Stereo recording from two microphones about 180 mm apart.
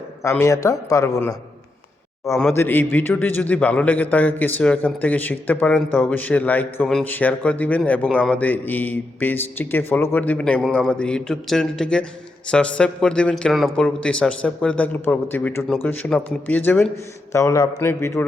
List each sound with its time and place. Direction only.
0.2 s a man's voice: 15° left (ahead or behind)
2.6 s a man's voice: 10° left (ahead or behind)